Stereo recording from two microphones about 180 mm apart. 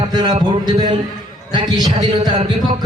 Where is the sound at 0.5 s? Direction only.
25° right (ahead or behind).